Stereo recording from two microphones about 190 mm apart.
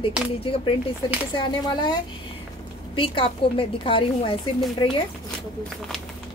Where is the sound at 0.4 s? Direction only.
30° left (ahead or behind).